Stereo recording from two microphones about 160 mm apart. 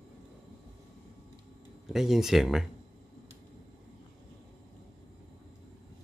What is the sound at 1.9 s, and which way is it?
Speech, centre (ahead or behind).